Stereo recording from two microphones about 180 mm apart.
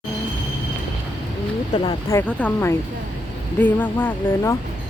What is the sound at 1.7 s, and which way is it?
Speech, 25° left (ahead or behind).